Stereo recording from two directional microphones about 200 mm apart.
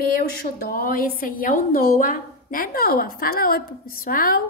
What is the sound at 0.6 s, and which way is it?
A woman's voice, 45° left (ahead or behind).